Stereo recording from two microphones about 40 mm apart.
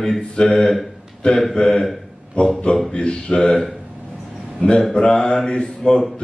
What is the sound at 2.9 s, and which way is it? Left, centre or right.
Speech, left.